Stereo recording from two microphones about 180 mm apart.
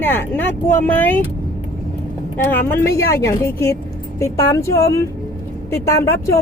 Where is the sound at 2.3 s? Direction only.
10° left (ahead or behind).